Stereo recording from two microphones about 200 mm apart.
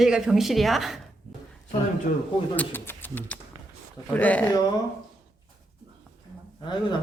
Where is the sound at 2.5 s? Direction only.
10° left (ahead or behind).